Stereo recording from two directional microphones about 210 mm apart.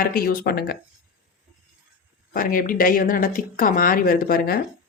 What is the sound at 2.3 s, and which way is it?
Speech, 40° left (ahead or behind).